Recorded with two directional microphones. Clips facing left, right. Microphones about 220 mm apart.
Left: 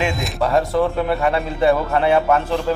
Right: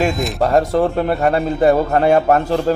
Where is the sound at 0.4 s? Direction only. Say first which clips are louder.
Right 2 dB; 45° right (ahead or behind).